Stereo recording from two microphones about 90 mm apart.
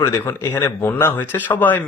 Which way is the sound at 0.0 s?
30° left (ahead or behind).